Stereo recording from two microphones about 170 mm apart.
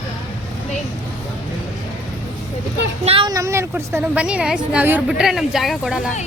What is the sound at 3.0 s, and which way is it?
Speech, 35° right (ahead or behind).